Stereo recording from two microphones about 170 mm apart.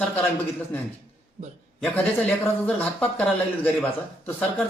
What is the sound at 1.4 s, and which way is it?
Speech, 30° right (ahead or behind).